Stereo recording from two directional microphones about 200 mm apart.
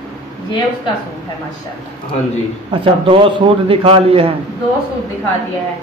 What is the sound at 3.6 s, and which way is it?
Speech, 30° right (ahead or behind).